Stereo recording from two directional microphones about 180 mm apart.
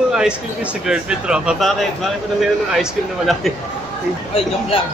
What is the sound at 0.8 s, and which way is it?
Speech, 5° right (ahead or behind).